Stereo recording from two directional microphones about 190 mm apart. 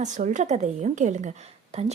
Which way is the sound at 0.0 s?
40° right (ahead or behind).